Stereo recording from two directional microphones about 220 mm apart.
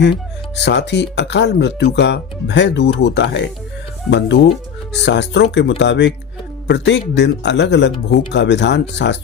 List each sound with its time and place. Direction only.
0.0 s speech: 50° left (ahead or behind)
5.0 s speech: 55° left (ahead or behind)